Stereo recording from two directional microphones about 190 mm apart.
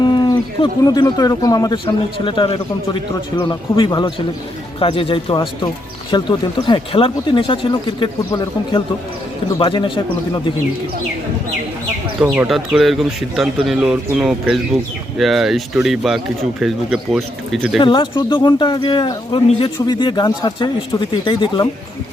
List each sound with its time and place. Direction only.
0.0 s speech: 20° left (ahead or behind)
12.2 s speech: 5° right (ahead or behind)
17.7 s speech: 25° left (ahead or behind)